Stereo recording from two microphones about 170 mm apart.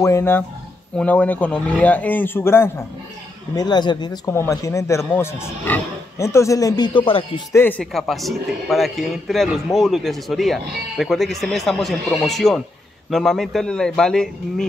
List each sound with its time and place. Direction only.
0.0 s speech: 15° left (ahead or behind)
3.5 s speech: 25° left (ahead or behind)
7.5 s speech: 10° left (ahead or behind)